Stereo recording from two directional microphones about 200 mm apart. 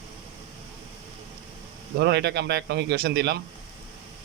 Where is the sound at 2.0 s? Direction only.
55° right (ahead or behind).